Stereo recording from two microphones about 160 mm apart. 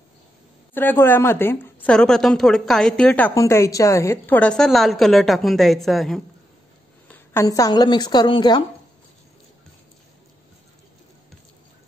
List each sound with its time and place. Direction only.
0.7 s a woman's voice: 10° left (ahead or behind)
7.1 s speech: 20° left (ahead or behind)